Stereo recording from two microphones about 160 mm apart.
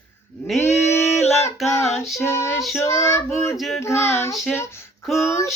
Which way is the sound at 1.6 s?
15° left (ahead or behind).